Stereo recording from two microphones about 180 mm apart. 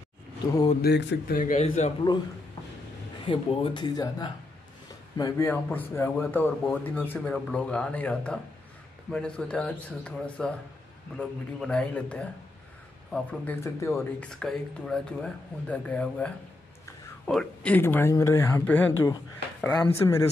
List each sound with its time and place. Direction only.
0.8 s speech: 60° left (ahead or behind); by 1.9 s 40° left (ahead or behind)
3.3 s speech: 25° left (ahead or behind)
5.5 s speech: 10° left (ahead or behind)
17.3 s speech: 5° left (ahead or behind)